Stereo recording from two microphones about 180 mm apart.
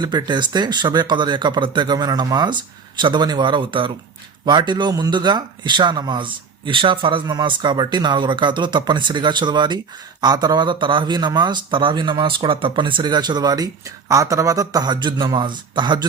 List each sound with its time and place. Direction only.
0.0 s speech: 25° right (ahead or behind)